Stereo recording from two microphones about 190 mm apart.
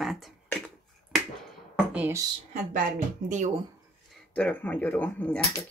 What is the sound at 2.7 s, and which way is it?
Speech, 45° right (ahead or behind).